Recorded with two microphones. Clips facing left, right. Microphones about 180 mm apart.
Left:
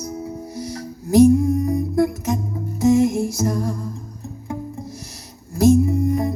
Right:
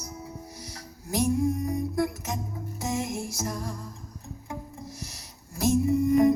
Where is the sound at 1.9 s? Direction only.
50° left (ahead or behind).